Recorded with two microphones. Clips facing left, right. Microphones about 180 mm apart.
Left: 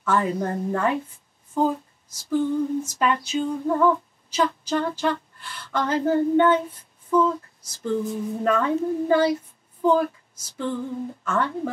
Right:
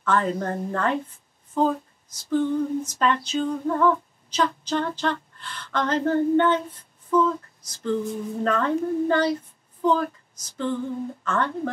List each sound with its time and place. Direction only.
0.0 s speech: 10° left (ahead or behind)
1.5 s female singing: 10° left (ahead or behind)
7.6 s speech: 5° left (ahead or behind)
9.8 s a sound: 10° left (ahead or behind)
11.2 s speech: 10° left (ahead or behind)